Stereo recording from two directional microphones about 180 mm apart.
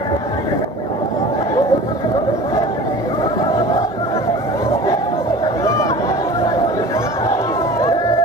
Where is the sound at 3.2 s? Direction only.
20° left (ahead or behind).